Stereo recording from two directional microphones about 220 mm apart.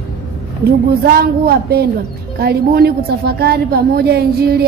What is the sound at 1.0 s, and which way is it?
A woman's voice, 45° right (ahead or behind).